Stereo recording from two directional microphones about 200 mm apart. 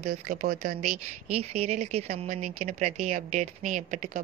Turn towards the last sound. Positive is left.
turn(degrees=-40)  # may be behind; listen again after turning